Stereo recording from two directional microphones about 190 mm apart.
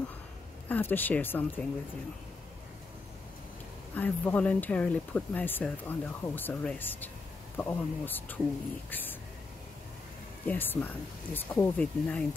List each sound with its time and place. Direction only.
0.7 s speech: 10° left (ahead or behind)
3.9 s speech: 10° left (ahead or behind)
10.4 s speech: 10° left (ahead or behind)